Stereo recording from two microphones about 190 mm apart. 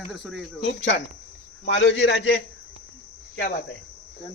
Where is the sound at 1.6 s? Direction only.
75° left (ahead or behind).